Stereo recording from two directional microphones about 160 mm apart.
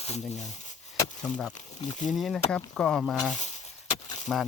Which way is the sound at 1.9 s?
50° left (ahead or behind).